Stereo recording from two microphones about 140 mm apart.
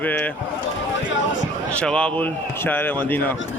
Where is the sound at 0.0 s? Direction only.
10° left (ahead or behind).